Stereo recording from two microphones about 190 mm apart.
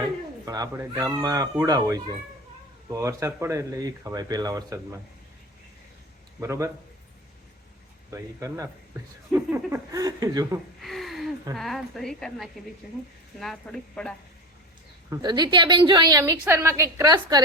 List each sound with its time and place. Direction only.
0.4 s speech: 20° right (ahead or behind)
6.4 s speech: 15° right (ahead or behind)
8.1 s speech: 15° right (ahead or behind)
10.8 s a sound: centre (ahead or behind)
11.5 s a woman's voice: centre (ahead or behind)
15.1 s speech: 25° right (ahead or behind)